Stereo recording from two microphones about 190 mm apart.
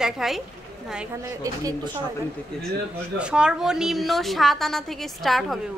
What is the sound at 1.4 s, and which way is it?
Speech, 20° right (ahead or behind).